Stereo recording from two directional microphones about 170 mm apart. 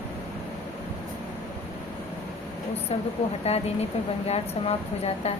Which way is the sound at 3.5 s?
40° left (ahead or behind).